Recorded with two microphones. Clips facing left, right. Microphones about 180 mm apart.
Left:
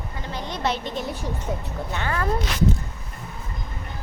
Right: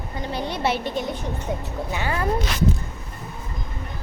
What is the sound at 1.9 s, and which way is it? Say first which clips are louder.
Speech: right 1 dB; 15° right (ahead or behind).